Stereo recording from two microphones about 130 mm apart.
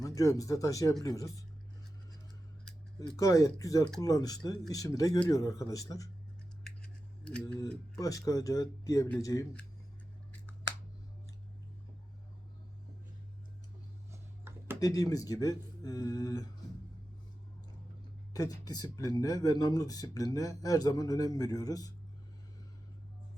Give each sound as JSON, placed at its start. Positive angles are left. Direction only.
{"t": 0.0, "sound": "speech", "side_deg": 25}
{"t": 3.1, "sound": "speech", "side_deg": 25}
{"t": 6.7, "sound": "scissors", "side_deg": 10}
{"t": 7.6, "sound": "speech", "side_deg": 25}
{"t": 14.1, "sound": "a sound", "side_deg": -20}
{"t": 14.8, "sound": "speech", "side_deg": 30}
{"t": 18.3, "sound": "speech", "side_deg": 30}